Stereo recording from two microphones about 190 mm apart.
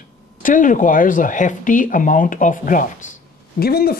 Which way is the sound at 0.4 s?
45° left (ahead or behind).